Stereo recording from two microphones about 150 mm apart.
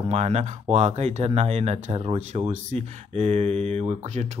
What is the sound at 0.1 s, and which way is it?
Speech, 45° right (ahead or behind).